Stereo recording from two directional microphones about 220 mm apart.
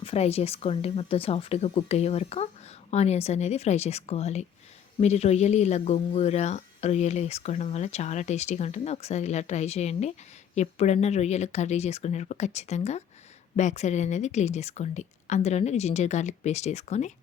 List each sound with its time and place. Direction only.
0.0 s speech: 25° left (ahead or behind)